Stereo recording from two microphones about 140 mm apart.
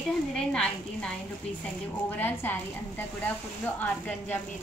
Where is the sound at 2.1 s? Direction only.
15° left (ahead or behind).